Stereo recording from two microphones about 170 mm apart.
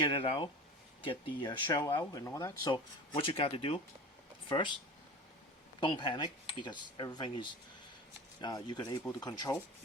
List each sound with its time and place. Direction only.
0.1 s speech: 30° left (ahead or behind)
5.8 s speech: 30° left (ahead or behind)